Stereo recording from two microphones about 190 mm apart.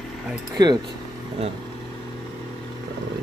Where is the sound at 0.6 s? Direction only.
20° right (ahead or behind).